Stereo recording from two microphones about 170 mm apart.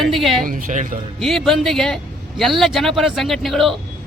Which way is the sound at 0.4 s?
50° right (ahead or behind).